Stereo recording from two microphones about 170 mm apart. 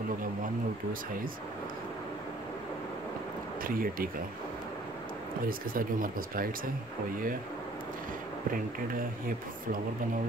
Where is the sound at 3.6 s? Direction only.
55° right (ahead or behind).